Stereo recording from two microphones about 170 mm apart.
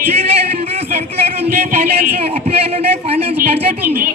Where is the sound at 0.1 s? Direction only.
35° right (ahead or behind).